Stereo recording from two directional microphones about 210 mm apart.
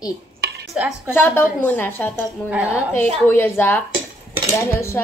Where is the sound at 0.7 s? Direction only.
5° right (ahead or behind).